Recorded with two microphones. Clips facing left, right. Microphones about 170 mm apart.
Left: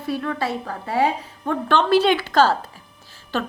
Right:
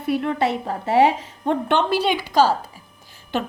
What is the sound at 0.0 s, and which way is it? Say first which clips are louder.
A woman's voice: right 4 dB; 20° right (ahead or behind).